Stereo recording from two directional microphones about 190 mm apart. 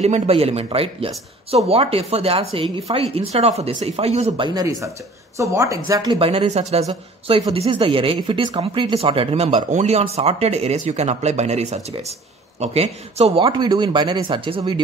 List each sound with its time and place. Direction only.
0.0 s speech: 35° right (ahead or behind)
4.6 s speech: 20° right (ahead or behind)
5.9 s a woman's voice: 25° right (ahead or behind)